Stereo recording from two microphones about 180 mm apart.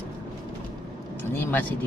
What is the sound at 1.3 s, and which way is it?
Speech, 10° left (ahead or behind).